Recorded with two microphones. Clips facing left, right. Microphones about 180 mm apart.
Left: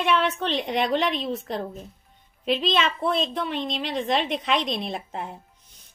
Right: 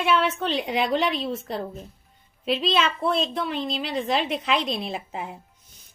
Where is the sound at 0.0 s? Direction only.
Centre (ahead or behind).